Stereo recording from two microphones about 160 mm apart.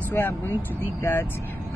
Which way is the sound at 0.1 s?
10° left (ahead or behind).